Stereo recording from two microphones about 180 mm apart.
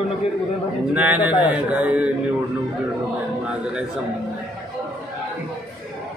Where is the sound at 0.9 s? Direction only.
10° right (ahead or behind).